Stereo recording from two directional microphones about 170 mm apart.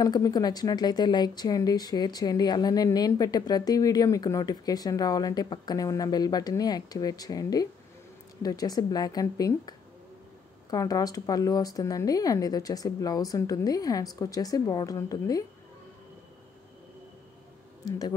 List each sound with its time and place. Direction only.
0.0 s speech: 20° left (ahead or behind)
17.8 s speech: 20° left (ahead or behind)